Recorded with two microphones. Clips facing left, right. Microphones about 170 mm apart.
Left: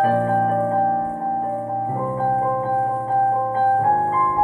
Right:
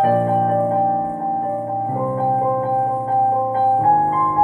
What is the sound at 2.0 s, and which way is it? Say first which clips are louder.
Music: right 3 dB; 15° right (ahead or behind).